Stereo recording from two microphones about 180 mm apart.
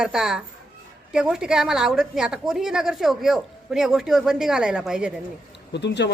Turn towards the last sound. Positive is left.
turn(degrees=70)  # may be behind; listen again after turning